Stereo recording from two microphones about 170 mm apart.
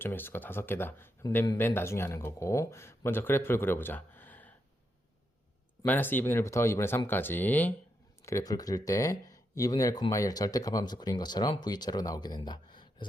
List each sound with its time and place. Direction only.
0.0 s speech: 10° left (ahead or behind)
5.8 s speech: 10° left (ahead or behind); by 13.1 s 25° left (ahead or behind)